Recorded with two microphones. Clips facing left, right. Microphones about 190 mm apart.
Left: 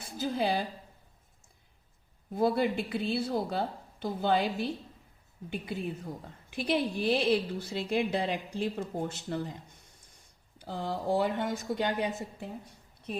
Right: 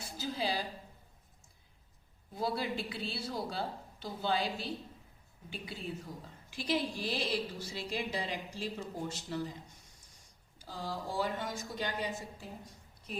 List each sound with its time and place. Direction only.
0.2 s a woman's voice: 55° left (ahead or behind)
2.3 s a woman's voice: 55° left (ahead or behind)
10.6 s a woman's voice: 60° left (ahead or behind)